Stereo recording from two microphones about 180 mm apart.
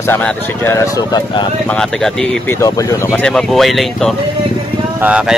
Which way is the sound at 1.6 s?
5° left (ahead or behind).